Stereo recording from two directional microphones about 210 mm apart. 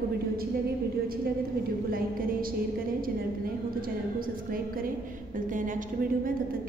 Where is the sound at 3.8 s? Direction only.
45° right (ahead or behind).